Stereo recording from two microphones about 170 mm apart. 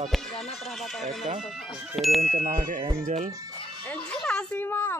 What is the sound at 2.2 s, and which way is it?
Wind chime, 45° right (ahead or behind).